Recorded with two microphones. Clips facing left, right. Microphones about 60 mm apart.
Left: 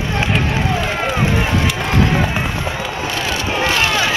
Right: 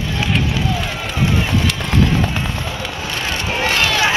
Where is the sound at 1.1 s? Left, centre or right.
Left.